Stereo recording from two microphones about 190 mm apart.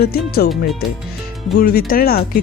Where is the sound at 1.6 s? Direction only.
50° left (ahead or behind).